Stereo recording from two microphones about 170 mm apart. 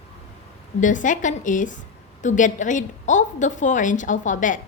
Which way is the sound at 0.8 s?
50° left (ahead or behind).